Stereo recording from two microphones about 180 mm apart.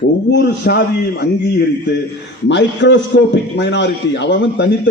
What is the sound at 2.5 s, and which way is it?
A man's voice, 80° left.